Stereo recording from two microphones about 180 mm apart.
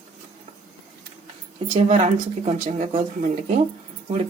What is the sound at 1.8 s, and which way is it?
Speech, 35° right (ahead or behind).